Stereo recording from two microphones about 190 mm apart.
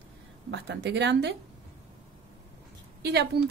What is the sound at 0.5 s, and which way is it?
Speech, 65° right (ahead or behind).